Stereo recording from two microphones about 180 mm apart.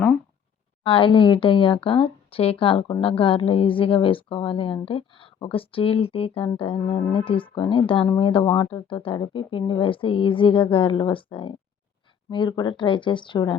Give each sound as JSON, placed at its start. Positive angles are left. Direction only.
{"t": 0.9, "sound": "speech", "side_deg": 30}